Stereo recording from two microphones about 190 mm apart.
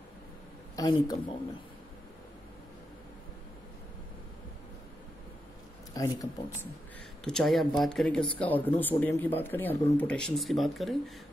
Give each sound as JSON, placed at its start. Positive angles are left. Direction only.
{"t": 0.7, "sound": "speech", "side_deg": 20}
{"t": 5.9, "sound": "speech", "side_deg": 20}
{"t": 7.2, "sound": "speech", "side_deg": 0}